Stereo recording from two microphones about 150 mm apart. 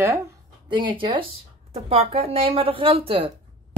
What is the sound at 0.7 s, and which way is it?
Speech, 30° right (ahead or behind).